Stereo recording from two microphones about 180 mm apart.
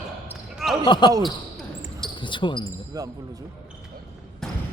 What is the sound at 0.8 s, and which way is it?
Speech, 25° left (ahead or behind).